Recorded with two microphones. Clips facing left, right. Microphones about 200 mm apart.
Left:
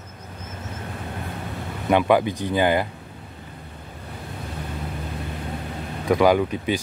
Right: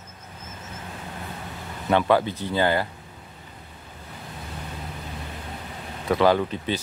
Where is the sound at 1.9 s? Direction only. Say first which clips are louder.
Left 2 dB; 15° left (ahead or behind).